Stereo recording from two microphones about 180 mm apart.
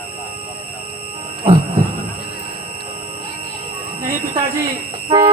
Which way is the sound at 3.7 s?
30° right (ahead or behind).